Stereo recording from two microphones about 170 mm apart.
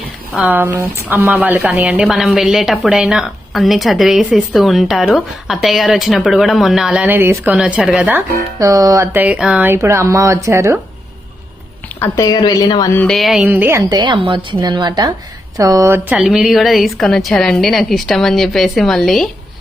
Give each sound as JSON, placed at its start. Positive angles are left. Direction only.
{"t": 0.3, "sound": "a woman's voice", "side_deg": -10}
{"t": 8.5, "sound": "speech", "side_deg": -20}
{"t": 11.9, "sound": "a woman's voice", "side_deg": 15}
{"t": 12.9, "sound": "a woman's voice", "side_deg": 5}
{"t": 16.1, "sound": "a woman's voice", "side_deg": 0}